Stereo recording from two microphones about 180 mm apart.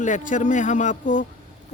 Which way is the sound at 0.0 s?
45° left (ahead or behind).